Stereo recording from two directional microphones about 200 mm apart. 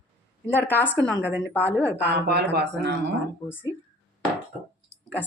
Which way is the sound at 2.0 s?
55° right (ahead or behind).